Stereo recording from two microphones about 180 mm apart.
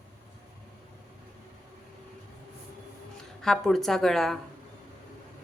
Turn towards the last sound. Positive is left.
turn(degrees=0)  # may be behind; listen again after turning